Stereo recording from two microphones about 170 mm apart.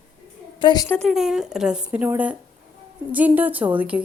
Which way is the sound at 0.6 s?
25° left (ahead or behind).